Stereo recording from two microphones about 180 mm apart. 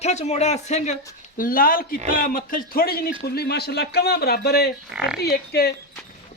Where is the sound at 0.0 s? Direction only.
40° left (ahead or behind).